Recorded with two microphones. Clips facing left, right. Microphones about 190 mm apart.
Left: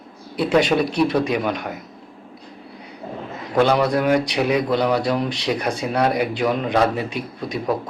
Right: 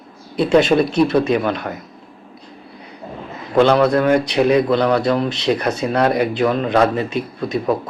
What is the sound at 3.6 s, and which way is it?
Speech, 10° left (ahead or behind).